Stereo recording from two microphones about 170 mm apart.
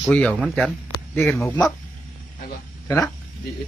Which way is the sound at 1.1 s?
10° left (ahead or behind).